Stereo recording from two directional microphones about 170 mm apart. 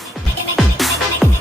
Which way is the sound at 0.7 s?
Centre (ahead or behind).